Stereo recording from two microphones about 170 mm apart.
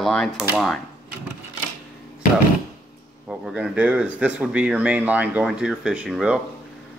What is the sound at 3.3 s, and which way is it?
Speech, 5° right (ahead or behind).